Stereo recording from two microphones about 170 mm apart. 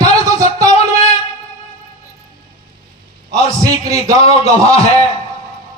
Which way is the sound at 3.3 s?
20° right (ahead or behind).